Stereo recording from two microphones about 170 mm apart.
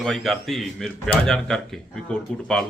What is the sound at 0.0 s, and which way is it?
Speech, centre (ahead or behind).